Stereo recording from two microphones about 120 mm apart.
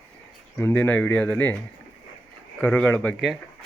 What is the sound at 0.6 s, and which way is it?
Speech, 15° left (ahead or behind).